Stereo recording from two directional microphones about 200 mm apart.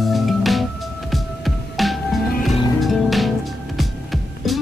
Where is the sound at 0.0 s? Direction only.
Centre (ahead or behind).